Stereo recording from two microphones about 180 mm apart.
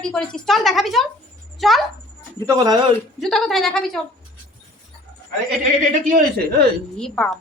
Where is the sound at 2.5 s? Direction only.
20° right (ahead or behind).